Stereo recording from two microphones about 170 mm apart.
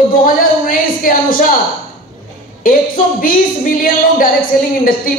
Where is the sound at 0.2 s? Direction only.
55° left (ahead or behind).